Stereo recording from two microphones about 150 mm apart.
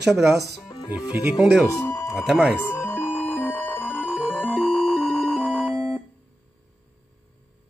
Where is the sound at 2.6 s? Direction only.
15° left (ahead or behind).